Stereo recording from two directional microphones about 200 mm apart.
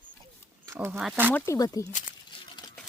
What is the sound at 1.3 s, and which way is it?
Speech, 15° left (ahead or behind).